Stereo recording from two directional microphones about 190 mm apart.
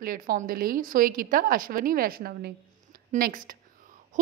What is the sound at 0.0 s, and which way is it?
A woman's voice, 45° right (ahead or behind).